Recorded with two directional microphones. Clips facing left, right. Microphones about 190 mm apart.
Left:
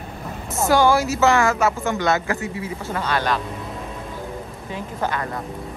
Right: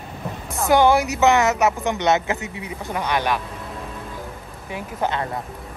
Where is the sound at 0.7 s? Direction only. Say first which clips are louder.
Right 1 dB; 20° right (ahead or behind).